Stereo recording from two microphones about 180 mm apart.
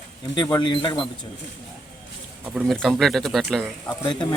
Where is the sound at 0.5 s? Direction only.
25° left (ahead or behind).